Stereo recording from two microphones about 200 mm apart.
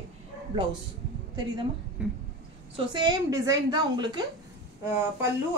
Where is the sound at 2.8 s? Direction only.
20° right (ahead or behind).